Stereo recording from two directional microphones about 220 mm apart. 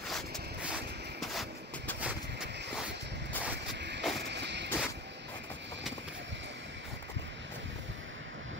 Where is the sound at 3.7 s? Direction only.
50° right (ahead or behind).